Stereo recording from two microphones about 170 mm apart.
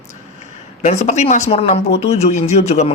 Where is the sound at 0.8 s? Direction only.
45° left (ahead or behind).